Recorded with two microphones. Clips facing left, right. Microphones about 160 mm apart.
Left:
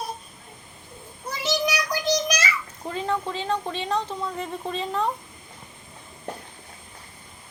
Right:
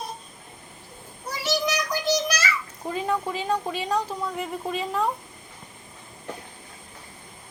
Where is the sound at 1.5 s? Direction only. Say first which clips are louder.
Even; 15° left (ahead or behind).